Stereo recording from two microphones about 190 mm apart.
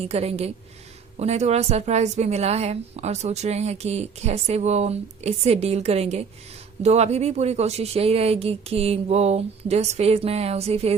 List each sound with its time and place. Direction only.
0.0 s a woman's voice: 35° right (ahead or behind)